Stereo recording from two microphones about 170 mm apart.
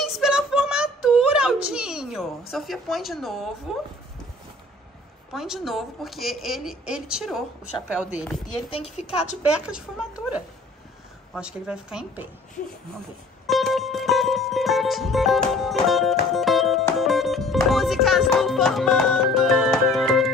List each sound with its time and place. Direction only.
0.0 s a sound: centre (ahead or behind)
2.5 s a woman's voice: centre (ahead or behind)
5.3 s a woman's voice: centre (ahead or behind)
8.6 s a woman's voice: 35° left (ahead or behind)
9.0 s a woman's voice: 5° right (ahead or behind)
11.3 s a woman's voice: 5° right (ahead or behind)
13.5 s music: centre (ahead or behind)